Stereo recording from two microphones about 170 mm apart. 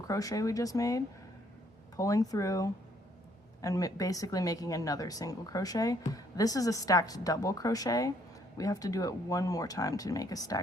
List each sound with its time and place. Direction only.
0.1 s speech: 20° left (ahead or behind)